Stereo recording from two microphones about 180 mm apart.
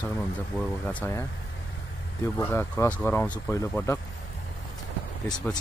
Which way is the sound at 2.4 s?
10° left (ahead or behind).